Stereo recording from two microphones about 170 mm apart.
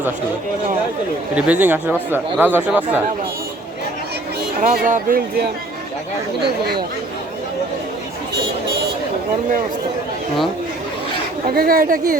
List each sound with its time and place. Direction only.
1.4 s speech: 10° right (ahead or behind)
4.6 s speech: 50° right (ahead or behind)
11.4 s speech: 60° right (ahead or behind)